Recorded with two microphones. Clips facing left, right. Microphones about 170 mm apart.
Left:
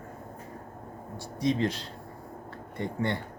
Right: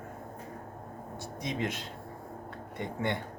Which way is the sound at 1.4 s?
20° right (ahead or behind).